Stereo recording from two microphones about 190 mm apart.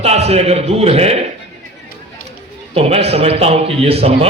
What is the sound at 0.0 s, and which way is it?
A man's voice, 35° right (ahead or behind).